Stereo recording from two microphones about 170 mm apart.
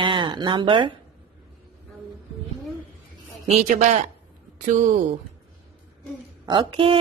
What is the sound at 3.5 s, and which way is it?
Speech, 45° right (ahead or behind).